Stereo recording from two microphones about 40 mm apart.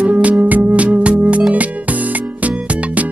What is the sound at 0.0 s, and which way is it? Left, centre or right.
Music, right.